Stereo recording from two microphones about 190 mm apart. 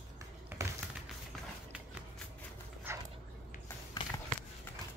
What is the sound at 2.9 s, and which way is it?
Dog, 10° right (ahead or behind).